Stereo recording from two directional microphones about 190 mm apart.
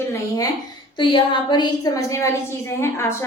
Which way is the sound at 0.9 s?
25° left (ahead or behind).